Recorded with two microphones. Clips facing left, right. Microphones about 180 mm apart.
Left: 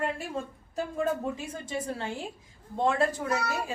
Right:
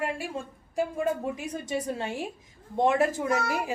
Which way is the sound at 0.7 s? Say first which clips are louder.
Right 2 dB; 15° right (ahead or behind).